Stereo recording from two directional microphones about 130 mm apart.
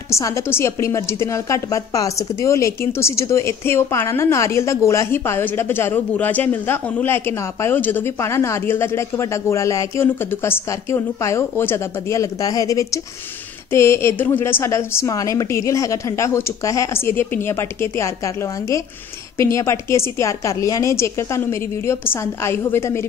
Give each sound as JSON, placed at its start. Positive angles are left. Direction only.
{"t": 0.1, "sound": "a woman's voice", "side_deg": 20}